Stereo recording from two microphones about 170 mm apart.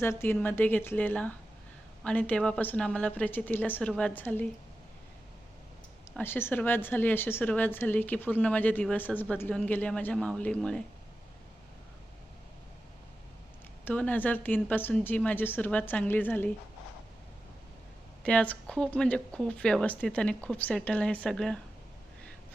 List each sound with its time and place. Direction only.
0.0 s a woman's voice: 15° left (ahead or behind)
6.1 s a woman's voice: 15° left (ahead or behind)
13.8 s a woman's voice: 10° left (ahead or behind)
18.2 s speech: 5° left (ahead or behind)